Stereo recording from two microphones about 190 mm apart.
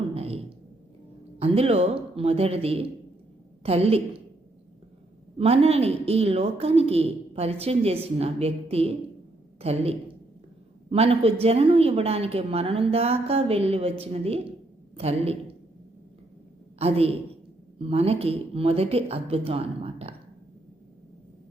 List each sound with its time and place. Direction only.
0.1 s a sound: 30° right (ahead or behind)
1.4 s a woman's voice: 30° right (ahead or behind)
5.4 s a woman's voice: 30° right (ahead or behind)
16.7 s a woman's voice: 30° right (ahead or behind)